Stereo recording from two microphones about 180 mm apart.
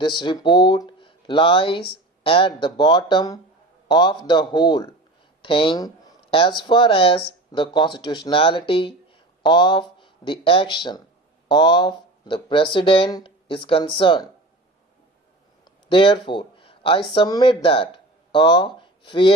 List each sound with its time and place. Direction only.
0.2 s speech: 25° left (ahead or behind)
15.6 s a sound: 30° left (ahead or behind)
17.2 s speech: 25° left (ahead or behind)